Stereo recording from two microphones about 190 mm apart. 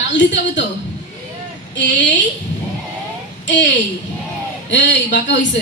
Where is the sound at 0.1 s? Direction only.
70° left (ahead or behind).